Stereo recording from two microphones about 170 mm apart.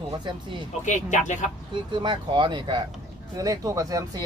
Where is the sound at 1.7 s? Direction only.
30° right (ahead or behind).